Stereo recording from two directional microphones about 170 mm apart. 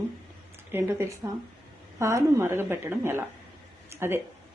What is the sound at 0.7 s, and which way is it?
Speech, 15° right (ahead or behind).